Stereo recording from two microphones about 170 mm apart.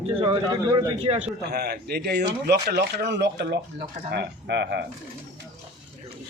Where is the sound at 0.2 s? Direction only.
25° right (ahead or behind).